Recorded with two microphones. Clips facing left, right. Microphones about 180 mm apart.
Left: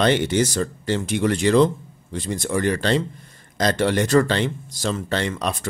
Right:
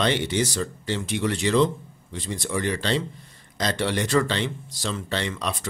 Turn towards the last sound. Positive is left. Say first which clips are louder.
# left 4 dB
turn(degrees=45)  # may be behind; listen again after turning